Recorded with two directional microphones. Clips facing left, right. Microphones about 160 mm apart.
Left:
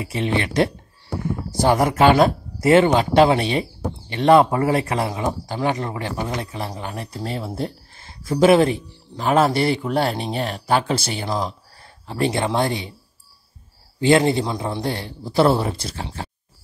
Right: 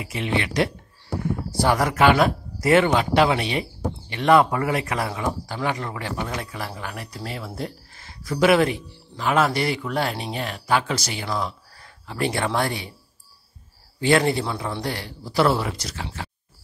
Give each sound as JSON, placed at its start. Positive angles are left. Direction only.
{"t": 0.0, "sound": "speech", "side_deg": 35}
{"t": 1.5, "sound": "speech", "side_deg": 20}
{"t": 13.9, "sound": "speech", "side_deg": 25}